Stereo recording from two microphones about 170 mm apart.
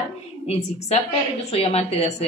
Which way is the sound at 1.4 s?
35° left (ahead or behind).